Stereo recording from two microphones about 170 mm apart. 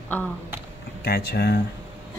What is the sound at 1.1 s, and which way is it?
Speech, 65° left (ahead or behind).